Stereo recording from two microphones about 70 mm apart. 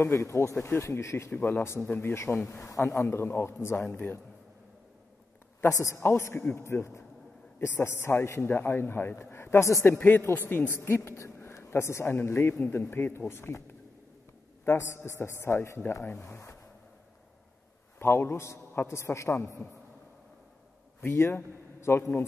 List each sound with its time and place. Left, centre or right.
0.0 s a man's voice: left
5.9 s a man's voice: left
17.9 s a man's voice: left
21.1 s a man's voice: left